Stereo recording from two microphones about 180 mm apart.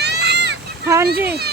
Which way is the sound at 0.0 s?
65° right (ahead or behind).